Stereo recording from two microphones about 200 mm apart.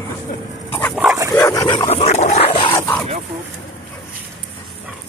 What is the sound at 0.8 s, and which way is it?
Dog, 5° right (ahead or behind).